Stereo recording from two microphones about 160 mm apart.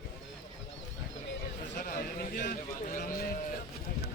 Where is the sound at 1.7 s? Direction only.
60° left (ahead or behind).